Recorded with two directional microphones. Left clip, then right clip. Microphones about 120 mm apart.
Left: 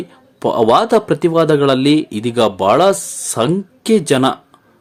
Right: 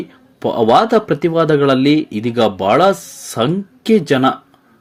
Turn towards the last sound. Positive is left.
turn(degrees=35)  # may be behind; listen again after turning